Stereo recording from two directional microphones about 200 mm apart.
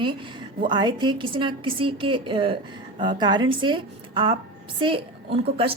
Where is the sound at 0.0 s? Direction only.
25° right (ahead or behind).